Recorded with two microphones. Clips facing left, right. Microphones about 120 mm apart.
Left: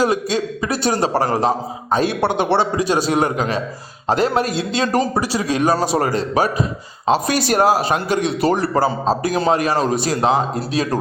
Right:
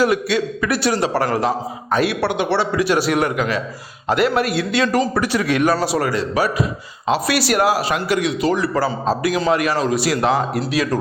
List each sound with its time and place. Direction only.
0.0 s a man's voice: 40° left (ahead or behind)
1.1 s a man's voice: 25° left (ahead or behind)
5.4 s a man's voice: 25° left (ahead or behind)
9.8 s a man's voice: 40° left (ahead or behind)
10.2 s a man's voice: 25° left (ahead or behind)